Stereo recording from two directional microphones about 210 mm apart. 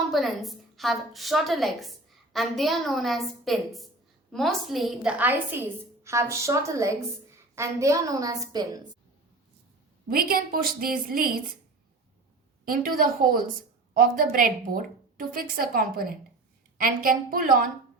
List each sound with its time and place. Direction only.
0.1 s a woman's voice: centre (ahead or behind); by 8.8 s 15° right (ahead or behind)
10.1 s a woman's voice: 45° right (ahead or behind)
12.6 s a woman's voice: 45° right (ahead or behind)